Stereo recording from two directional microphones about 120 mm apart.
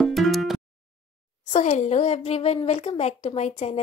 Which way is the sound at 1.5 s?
75° left (ahead or behind).